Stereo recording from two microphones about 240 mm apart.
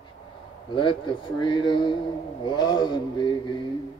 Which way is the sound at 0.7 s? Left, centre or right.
Left.